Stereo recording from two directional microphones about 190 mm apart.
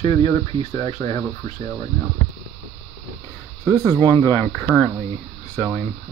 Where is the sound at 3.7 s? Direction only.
10° left (ahead or behind).